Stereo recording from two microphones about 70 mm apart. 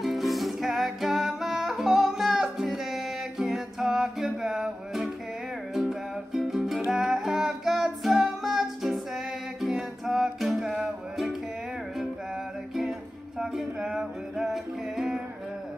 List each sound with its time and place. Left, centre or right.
0.0 s music: centre
4.5 s music: centre
6.3 s music: centre
13.4 s music: centre